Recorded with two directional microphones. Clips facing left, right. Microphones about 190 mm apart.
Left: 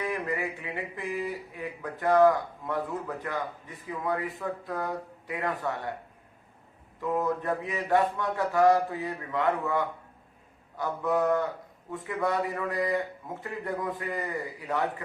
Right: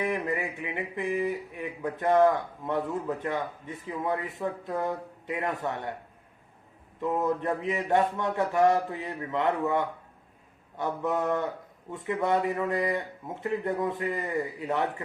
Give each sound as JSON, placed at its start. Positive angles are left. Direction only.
{"t": 0.0, "sound": "speech", "side_deg": -20}
{"t": 7.0, "sound": "speech", "side_deg": -20}